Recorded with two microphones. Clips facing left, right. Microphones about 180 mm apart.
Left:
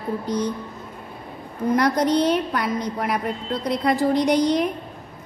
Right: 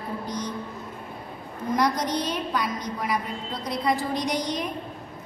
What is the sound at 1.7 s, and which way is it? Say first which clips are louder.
A woman's voice: left 5 dB; 60° left (ahead or behind).